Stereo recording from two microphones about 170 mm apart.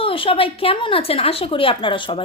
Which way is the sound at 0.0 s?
30° left (ahead or behind).